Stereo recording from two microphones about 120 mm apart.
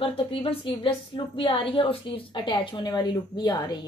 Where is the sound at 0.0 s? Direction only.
55° left (ahead or behind).